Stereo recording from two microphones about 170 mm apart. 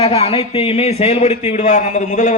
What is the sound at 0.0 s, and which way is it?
A man's voice, 35° left (ahead or behind).